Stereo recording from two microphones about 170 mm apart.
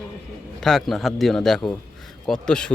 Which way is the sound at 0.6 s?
Centre (ahead or behind).